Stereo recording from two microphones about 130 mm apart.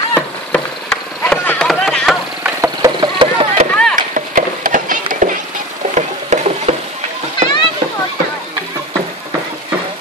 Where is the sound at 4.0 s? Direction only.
85° right.